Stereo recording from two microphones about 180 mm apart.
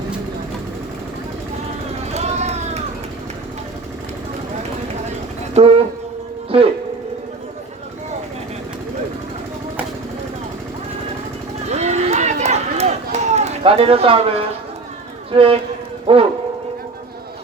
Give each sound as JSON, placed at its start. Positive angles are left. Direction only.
{"t": 2.1, "sound": "vehicle", "side_deg": -40}
{"t": 5.5, "sound": "a sound", "side_deg": -35}
{"t": 6.5, "sound": "speech", "side_deg": -30}
{"t": 11.7, "sound": "run", "side_deg": -40}
{"t": 15.3, "sound": "speech", "side_deg": -30}